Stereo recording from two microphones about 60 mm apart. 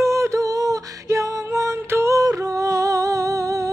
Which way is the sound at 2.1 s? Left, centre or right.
Right.